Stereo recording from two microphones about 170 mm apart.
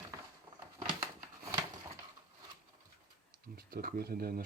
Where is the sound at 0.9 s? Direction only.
20° right (ahead or behind).